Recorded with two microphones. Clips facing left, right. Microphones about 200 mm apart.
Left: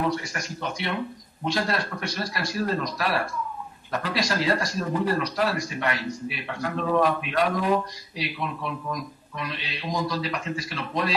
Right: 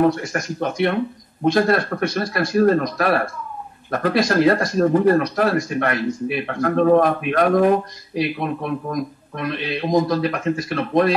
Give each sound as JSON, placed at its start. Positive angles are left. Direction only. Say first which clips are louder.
{"t": 0.0, "sound": "speech", "louder": "right 9 dB", "side_deg": -50}